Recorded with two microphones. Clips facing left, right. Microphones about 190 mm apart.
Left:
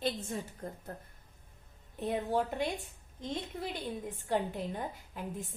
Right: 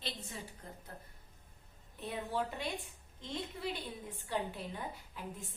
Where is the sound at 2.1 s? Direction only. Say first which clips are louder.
Left 6 dB; 45° left (ahead or behind).